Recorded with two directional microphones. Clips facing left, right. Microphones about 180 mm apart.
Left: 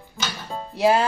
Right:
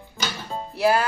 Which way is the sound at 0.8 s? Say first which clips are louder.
Left 2 dB; 25° left (ahead or behind).